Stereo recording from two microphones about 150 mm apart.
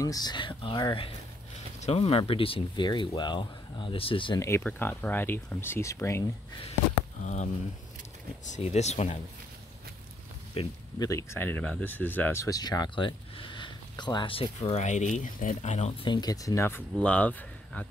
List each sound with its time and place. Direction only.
0.0 s speech: 25° left (ahead or behind)
4.4 s speech: 15° left (ahead or behind)
8.5 s speech: 50° left (ahead or behind)
10.6 s speech: 40° left (ahead or behind)
11.0 s speech: 20° left (ahead or behind); by 16.1 s 45° left (ahead or behind)
16.1 s speech: 25° left (ahead or behind); by 17.8 s 10° left (ahead or behind)